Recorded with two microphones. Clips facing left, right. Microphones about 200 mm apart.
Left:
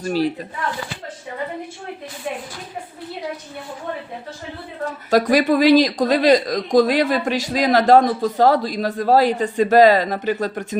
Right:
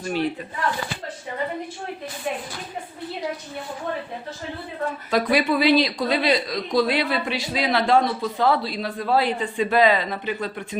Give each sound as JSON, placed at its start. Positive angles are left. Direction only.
{"t": 0.0, "sound": "speech", "side_deg": 40}
{"t": 4.9, "sound": "speech", "side_deg": 45}